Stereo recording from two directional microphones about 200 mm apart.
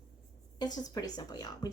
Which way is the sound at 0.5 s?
20° left (ahead or behind).